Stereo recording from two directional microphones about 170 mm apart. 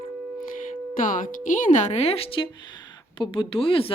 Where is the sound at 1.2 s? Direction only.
50° left (ahead or behind).